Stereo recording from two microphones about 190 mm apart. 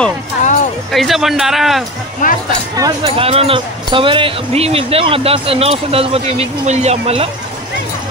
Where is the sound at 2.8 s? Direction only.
25° right (ahead or behind).